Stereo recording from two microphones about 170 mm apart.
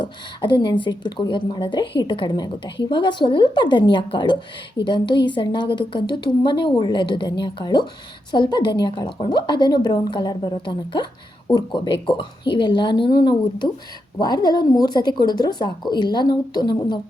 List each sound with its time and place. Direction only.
0.0 s a woman's voice: 25° left (ahead or behind)
14.2 s a woman's voice: 25° left (ahead or behind)